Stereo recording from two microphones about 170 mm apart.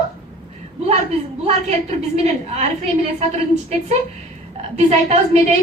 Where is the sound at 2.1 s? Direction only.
40° right (ahead or behind).